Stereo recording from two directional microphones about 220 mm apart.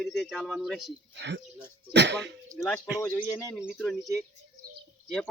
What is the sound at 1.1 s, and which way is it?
Speech, 50° right (ahead or behind).